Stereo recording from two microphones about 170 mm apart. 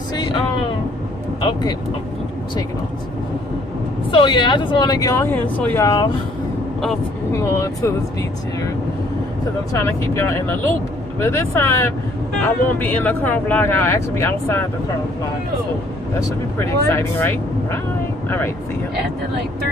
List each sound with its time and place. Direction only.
0.1 s speech: 25° left (ahead or behind)
4.1 s speech: 30° left (ahead or behind); by 5.9 s 10° left (ahead or behind)
5.9 s speech: 25° left (ahead or behind)
7.3 s speech: 15° left (ahead or behind)
9.7 s speech: 15° left (ahead or behind)
16.2 s speech: 15° left (ahead or behind)